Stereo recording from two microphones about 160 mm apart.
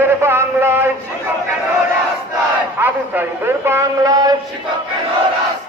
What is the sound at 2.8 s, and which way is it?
A man's voice, 15° right (ahead or behind).